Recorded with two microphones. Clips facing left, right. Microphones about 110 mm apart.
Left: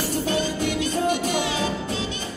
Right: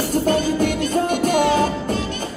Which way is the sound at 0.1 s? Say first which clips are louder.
Right 8 dB; 50° right (ahead or behind).